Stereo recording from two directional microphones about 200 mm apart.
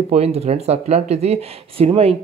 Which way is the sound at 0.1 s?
30° right (ahead or behind).